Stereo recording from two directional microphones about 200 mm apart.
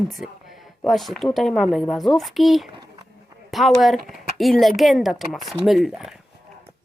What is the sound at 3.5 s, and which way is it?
Speech, centre (ahead or behind).